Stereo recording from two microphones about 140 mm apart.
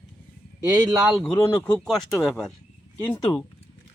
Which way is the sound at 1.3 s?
20° left (ahead or behind).